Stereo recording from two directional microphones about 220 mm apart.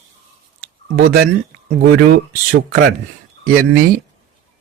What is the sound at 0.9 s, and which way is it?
Speech, 45° right (ahead or behind).